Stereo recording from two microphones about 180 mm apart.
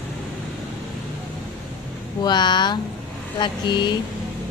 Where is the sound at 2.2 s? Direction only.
25° left (ahead or behind).